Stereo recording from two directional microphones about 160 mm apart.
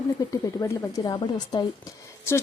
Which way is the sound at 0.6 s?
20° left (ahead or behind).